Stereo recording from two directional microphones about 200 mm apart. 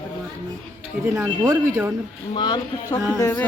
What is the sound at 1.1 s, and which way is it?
Speech, 15° right (ahead or behind).